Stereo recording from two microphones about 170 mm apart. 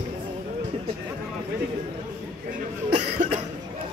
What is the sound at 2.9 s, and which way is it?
Cough, 50° right (ahead or behind).